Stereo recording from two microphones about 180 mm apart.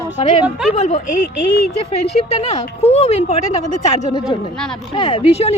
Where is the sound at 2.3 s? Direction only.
35° left (ahead or behind).